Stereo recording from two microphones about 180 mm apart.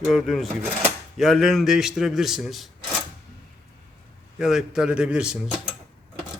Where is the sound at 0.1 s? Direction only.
Centre (ahead or behind).